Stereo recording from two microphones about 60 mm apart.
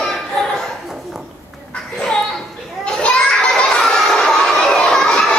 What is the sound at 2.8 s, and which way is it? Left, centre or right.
Children playing, centre.